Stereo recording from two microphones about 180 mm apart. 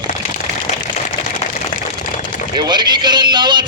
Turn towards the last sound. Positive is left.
turn(degrees=-25)  # may be behind; listen again after turning